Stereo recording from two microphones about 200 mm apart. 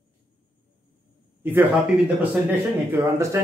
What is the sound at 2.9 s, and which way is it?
Speech, 15° right (ahead or behind).